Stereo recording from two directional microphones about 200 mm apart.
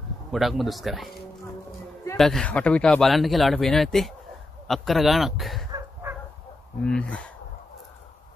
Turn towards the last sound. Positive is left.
turn(degrees=5)  # may be behind; listen again after turning